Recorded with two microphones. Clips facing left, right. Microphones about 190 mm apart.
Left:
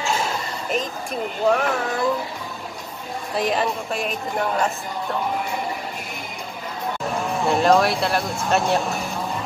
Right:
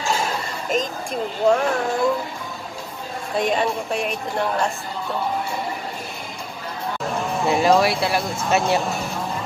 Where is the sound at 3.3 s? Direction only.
Centre (ahead or behind).